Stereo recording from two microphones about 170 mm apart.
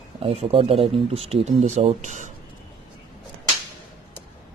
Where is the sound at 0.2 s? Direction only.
35° right (ahead or behind).